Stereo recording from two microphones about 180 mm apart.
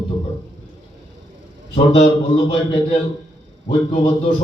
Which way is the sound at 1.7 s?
30° left (ahead or behind).